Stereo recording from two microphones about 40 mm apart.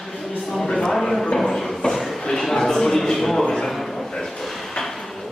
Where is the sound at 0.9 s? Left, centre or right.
Centre.